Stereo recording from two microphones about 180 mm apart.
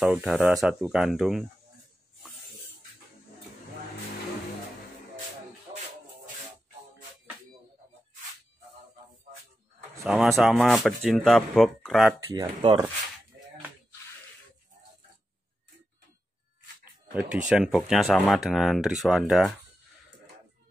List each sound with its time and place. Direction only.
0.0 s speech: centre (ahead or behind)
10.0 s speech: centre (ahead or behind)
12.4 s speech: 20° right (ahead or behind)
16.8 s a sound: 5° right (ahead or behind)
17.5 s speech: centre (ahead or behind)